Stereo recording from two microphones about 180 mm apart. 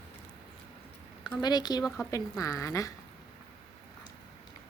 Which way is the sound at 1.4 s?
20° left (ahead or behind).